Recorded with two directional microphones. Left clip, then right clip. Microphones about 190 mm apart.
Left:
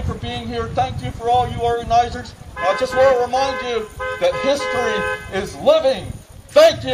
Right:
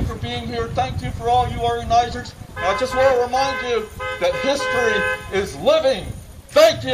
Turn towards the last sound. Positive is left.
turn(degrees=-10)  # may be behind; listen again after turning